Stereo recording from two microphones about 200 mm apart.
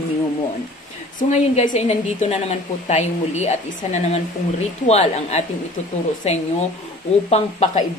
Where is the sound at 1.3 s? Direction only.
35° left (ahead or behind).